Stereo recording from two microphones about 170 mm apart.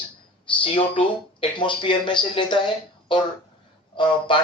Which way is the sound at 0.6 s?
30° left (ahead or behind).